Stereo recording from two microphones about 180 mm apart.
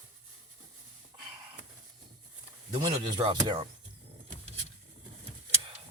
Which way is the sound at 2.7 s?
25° right (ahead or behind).